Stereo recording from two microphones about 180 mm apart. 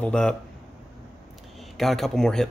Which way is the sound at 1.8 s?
Centre (ahead or behind).